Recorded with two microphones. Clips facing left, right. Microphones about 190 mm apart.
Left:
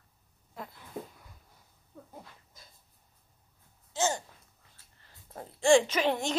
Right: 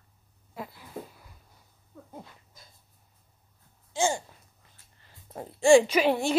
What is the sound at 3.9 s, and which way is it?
Speech, 10° right (ahead or behind).